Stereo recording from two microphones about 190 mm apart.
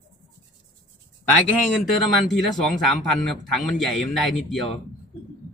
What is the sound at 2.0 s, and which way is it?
A man's voice, centre (ahead or behind).